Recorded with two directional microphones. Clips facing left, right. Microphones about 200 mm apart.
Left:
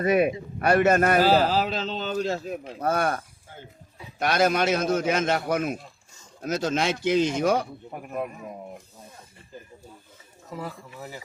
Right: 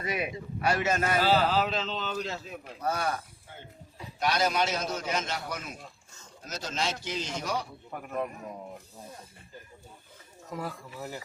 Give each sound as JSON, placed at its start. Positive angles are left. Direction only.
{"t": 0.0, "sound": "a man's voice", "side_deg": 50}
{"t": 1.2, "sound": "speech", "side_deg": 40}
{"t": 4.2, "sound": "a man's voice", "side_deg": 55}
{"t": 10.6, "sound": "speech", "side_deg": 0}